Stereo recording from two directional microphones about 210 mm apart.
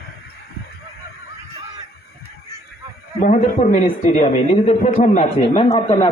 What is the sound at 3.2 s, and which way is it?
A man's voice, 40° left (ahead or behind).